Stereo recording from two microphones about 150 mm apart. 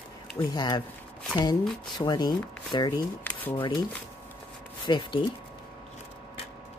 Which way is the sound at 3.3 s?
10° left (ahead or behind).